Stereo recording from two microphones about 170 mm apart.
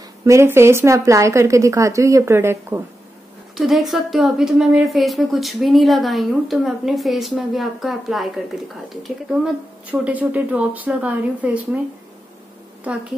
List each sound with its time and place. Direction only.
0.2 s speech: 15° right (ahead or behind)
3.5 s a woman's voice: centre (ahead or behind)